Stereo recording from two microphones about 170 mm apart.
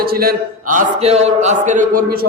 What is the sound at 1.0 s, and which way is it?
A man's voice, 40° right (ahead or behind).